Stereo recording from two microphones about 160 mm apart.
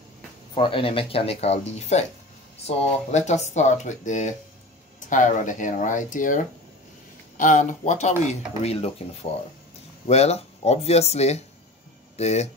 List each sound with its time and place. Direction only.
0.6 s speech: 35° left (ahead or behind)